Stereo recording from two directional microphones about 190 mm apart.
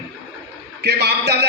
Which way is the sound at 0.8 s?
60° right (ahead or behind).